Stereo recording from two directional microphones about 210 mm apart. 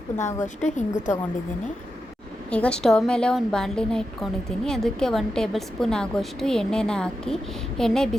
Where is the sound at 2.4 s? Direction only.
5° left (ahead or behind).